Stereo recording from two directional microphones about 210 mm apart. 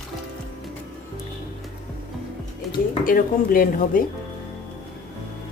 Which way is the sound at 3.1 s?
40° left (ahead or behind).